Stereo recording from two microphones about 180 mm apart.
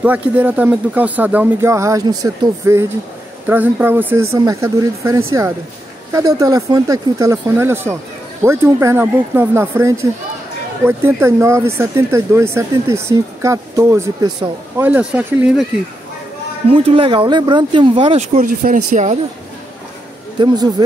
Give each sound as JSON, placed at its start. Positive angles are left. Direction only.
{"t": 0.0, "sound": "speech", "side_deg": -10}
{"t": 16.6, "sound": "speech", "side_deg": -30}
{"t": 18.6, "sound": "speech", "side_deg": -50}
{"t": 20.3, "sound": "speech", "side_deg": -20}